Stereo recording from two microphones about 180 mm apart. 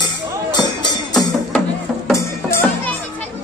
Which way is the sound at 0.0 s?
25° left (ahead or behind).